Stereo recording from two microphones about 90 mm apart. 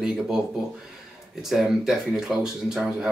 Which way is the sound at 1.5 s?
5° right (ahead or behind).